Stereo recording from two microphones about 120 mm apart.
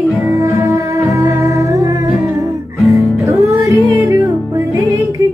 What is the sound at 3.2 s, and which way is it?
Music, 25° right (ahead or behind).